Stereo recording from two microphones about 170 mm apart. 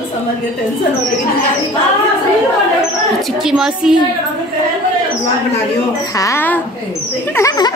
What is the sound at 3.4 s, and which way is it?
Speech, 5° right (ahead or behind).